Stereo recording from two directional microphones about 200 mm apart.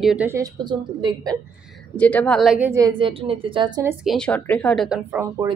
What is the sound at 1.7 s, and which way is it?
A woman's voice, 5° left (ahead or behind).